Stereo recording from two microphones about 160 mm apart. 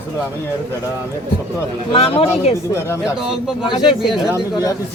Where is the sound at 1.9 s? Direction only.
35° left (ahead or behind).